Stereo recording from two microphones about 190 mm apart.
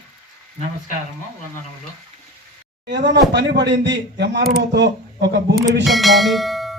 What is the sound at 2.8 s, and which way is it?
Speech, 65° right (ahead or behind).